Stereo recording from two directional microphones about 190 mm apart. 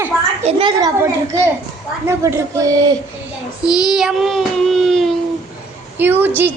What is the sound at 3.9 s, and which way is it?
Child singing, centre (ahead or behind).